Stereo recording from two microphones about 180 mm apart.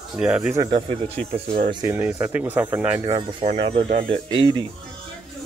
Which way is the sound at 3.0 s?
25° right (ahead or behind).